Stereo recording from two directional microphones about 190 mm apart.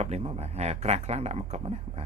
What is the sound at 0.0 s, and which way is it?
Speech, 35° right (ahead or behind).